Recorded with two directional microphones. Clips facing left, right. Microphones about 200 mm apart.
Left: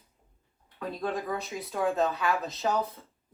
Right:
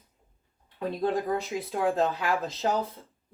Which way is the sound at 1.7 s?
30° right (ahead or behind).